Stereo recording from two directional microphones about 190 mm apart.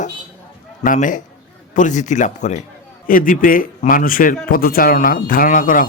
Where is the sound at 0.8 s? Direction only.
40° left (ahead or behind).